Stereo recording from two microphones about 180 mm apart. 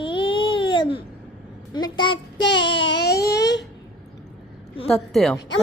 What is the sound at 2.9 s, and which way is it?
Baby cry, 65° left (ahead or behind).